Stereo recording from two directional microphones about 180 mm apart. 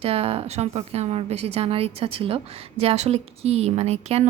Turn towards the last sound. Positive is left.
turn(degrees=-35)  # may be behind; listen again after turning